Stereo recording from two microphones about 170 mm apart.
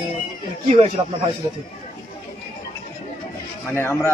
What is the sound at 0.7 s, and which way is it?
Speech, 40° right (ahead or behind).